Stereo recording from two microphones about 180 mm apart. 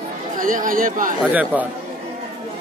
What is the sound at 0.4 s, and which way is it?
Speech, 50° right (ahead or behind).